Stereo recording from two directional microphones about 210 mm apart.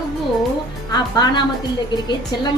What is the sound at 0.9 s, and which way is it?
A woman's voice, 20° left (ahead or behind).